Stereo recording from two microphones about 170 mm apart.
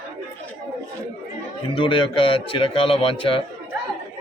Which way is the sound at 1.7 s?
30° left (ahead or behind).